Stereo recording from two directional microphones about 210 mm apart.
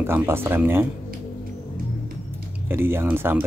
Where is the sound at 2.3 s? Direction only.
10° right (ahead or behind).